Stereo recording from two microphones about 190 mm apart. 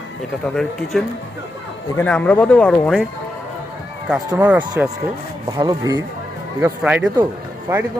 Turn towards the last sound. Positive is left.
turn(degrees=-10)  # may be behind; listen again after turning